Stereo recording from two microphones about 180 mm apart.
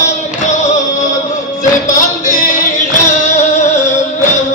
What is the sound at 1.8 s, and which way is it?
Music, 45° left (ahead or behind).